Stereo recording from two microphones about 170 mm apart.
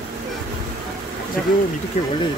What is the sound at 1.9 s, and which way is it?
Speech, 35° left (ahead or behind).